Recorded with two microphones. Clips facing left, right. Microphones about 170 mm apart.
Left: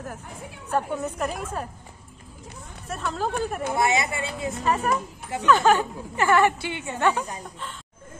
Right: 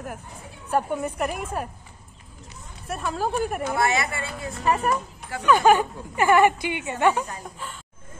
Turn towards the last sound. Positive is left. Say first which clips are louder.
# right 2 dB
turn(degrees=-10)  # may be behind; listen again after turning